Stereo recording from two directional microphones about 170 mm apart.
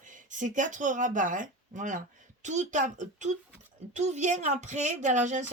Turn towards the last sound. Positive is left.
turn(degrees=-45)  # may be behind; listen again after turning